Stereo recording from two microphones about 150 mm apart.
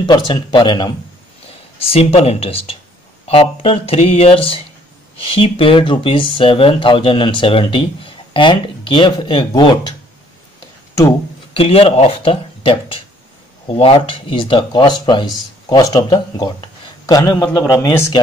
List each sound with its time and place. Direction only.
0.0 s speech: 30° left (ahead or behind)
1.9 s speech: 40° left (ahead or behind)
11.5 s speech: 40° left (ahead or behind); by 18.0 s 15° left (ahead or behind)